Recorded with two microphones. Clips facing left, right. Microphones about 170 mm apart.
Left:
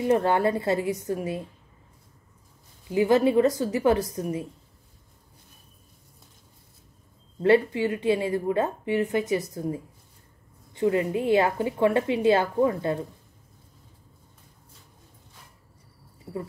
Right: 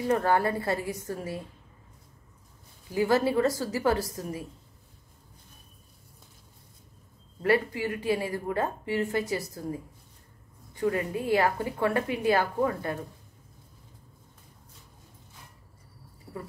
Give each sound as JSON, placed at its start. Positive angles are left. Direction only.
{"t": 0.0, "sound": "a woman's voice", "side_deg": 20}
{"t": 2.9, "sound": "a woman's voice", "side_deg": 20}
{"t": 7.4, "sound": "a woman's voice", "side_deg": 25}